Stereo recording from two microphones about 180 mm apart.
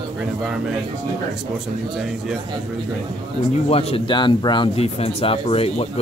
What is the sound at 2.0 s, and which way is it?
Speech, 5° right (ahead or behind).